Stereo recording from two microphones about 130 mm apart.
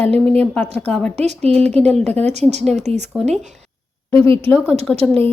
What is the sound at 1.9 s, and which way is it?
Speech, 5° left (ahead or behind).